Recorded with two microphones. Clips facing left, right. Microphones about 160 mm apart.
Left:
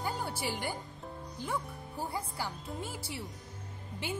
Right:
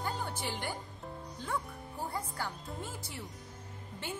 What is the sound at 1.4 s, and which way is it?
Speech, 10° left (ahead or behind).